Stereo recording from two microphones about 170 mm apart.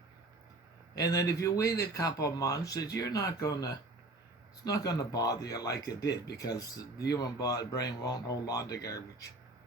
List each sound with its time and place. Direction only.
0.9 s speech: 20° left (ahead or behind)